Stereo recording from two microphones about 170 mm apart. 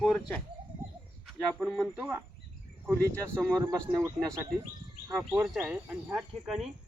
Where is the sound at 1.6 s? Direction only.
Centre (ahead or behind).